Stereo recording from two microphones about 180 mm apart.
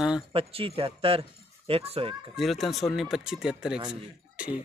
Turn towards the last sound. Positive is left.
turn(degrees=-5)  # may be behind; listen again after turning